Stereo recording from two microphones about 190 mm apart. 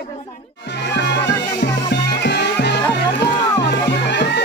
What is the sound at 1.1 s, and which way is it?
Music, 20° left (ahead or behind).